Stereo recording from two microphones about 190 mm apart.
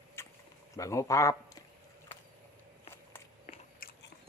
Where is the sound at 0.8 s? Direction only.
15° left (ahead or behind).